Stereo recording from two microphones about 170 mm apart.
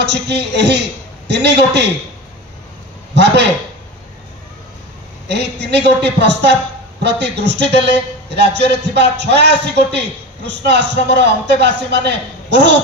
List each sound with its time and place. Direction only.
0.0 s a man's voice: 85° right
5.3 s a man's voice: 85° right